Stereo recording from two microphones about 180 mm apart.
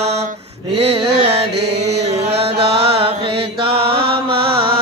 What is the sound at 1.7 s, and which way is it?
Chant, 70° right (ahead or behind).